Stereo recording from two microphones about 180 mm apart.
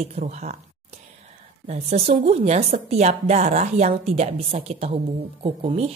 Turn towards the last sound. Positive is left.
turn(degrees=-30)  # may be behind; listen again after turning